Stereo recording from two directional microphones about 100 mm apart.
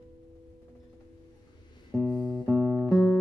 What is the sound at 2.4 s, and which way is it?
Music, 15° right (ahead or behind).